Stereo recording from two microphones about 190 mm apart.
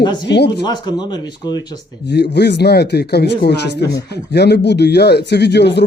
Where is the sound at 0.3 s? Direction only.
60° left (ahead or behind).